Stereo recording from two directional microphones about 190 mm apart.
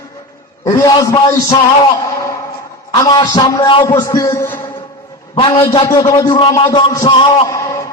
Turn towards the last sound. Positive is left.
turn(degrees=15)  # may be behind; listen again after turning